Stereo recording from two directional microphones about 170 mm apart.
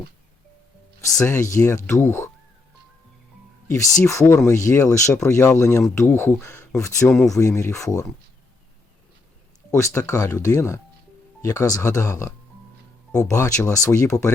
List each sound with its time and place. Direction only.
1.0 s speech: 15° left (ahead or behind)
3.7 s speech: 20° left (ahead or behind)
9.7 s speech: 20° left (ahead or behind)